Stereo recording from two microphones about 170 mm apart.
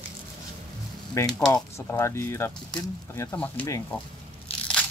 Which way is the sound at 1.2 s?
15° left (ahead or behind).